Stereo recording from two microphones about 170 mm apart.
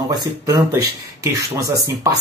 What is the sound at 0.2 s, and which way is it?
Speech, 20° right (ahead or behind).